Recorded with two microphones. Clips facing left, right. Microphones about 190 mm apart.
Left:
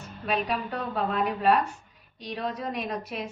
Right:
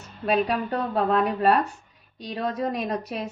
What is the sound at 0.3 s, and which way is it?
Speech, 40° right (ahead or behind).